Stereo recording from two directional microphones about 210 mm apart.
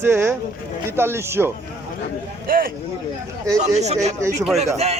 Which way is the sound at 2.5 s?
45° right (ahead or behind).